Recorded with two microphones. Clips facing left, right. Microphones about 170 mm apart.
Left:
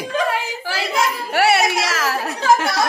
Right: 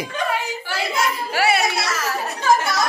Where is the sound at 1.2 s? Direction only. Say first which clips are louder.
Left 4 dB; 65° left (ahead or behind); by 2.6 s 90° left.